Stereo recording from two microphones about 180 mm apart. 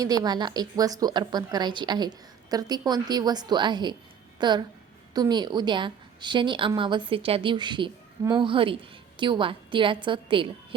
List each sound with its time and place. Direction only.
0.0 s a woman's voice: 20° right (ahead or behind)